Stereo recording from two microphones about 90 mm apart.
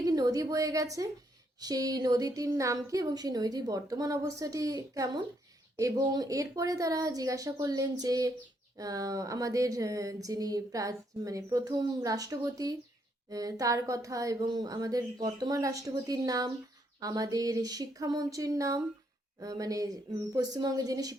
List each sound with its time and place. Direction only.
0.0 s a woman's voice: 45° right (ahead or behind)